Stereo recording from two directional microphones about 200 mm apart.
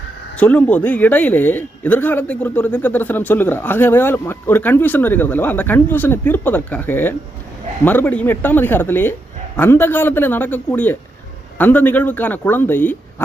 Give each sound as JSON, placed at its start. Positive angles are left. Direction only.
{"t": 0.3, "sound": "speech", "side_deg": 5}